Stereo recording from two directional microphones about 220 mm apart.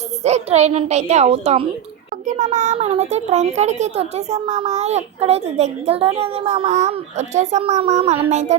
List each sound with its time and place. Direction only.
0.2 s a child's voice: 30° right (ahead or behind)